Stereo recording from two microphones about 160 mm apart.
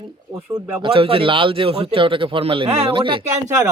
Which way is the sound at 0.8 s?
35° right (ahead or behind).